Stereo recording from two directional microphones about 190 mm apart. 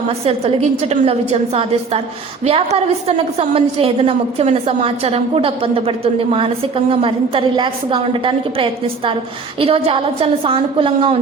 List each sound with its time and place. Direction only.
0.3 s a woman's voice: 35° right (ahead or behind)